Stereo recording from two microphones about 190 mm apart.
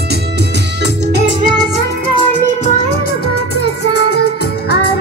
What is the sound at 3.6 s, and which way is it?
Music, 60° left (ahead or behind).